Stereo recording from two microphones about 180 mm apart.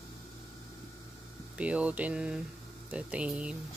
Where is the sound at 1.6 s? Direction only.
5° right (ahead or behind).